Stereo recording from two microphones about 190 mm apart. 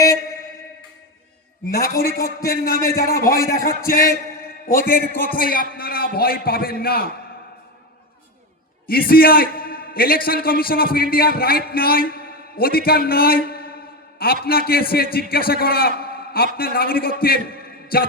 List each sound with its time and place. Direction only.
0.0 s a sound: 15° left (ahead or behind)
1.7 s a man's voice: 50° left (ahead or behind)
8.9 s a man's voice: 50° left (ahead or behind)